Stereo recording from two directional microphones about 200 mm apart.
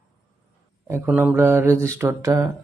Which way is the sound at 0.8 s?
10° right (ahead or behind).